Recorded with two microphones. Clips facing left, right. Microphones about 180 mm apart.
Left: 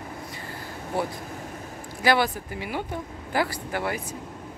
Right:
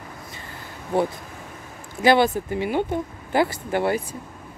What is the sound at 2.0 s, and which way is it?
Speech, 25° right (ahead or behind).